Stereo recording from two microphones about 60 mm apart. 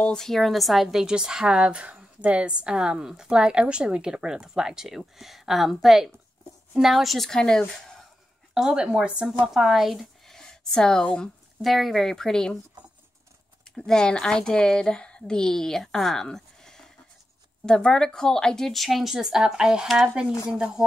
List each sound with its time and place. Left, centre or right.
0.0 s speech: centre
1.0 s a woman's voice: centre
8.5 s a woman's voice: centre
9.5 s speech: centre
10.3 s a sound: centre
11.6 s speech: centre
13.7 s speech: centre